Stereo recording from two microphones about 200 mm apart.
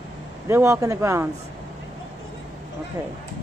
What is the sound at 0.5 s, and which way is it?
Speech, 15° right (ahead or behind).